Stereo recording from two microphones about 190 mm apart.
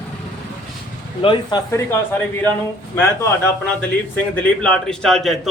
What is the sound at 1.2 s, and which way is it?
A man's voice, 25° left (ahead or behind).